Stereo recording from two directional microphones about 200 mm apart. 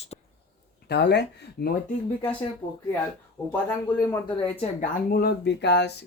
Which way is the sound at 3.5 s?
10° left (ahead or behind).